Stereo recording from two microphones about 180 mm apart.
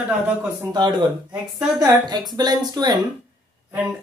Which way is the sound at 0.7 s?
25° right (ahead or behind).